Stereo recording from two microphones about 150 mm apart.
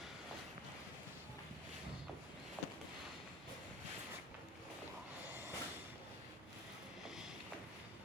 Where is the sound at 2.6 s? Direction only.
10° left (ahead or behind).